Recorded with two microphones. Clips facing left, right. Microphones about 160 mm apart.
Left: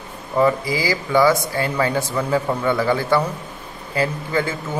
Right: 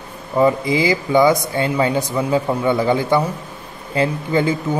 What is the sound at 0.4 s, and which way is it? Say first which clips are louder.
A man's voice: right 3 dB; 20° right (ahead or behind).